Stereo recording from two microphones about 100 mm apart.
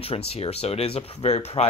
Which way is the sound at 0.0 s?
80° left.